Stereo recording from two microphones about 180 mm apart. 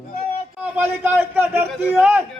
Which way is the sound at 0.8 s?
10° right (ahead or behind).